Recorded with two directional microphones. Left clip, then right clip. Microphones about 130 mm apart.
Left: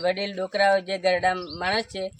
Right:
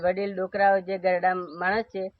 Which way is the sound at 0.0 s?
15° left (ahead or behind).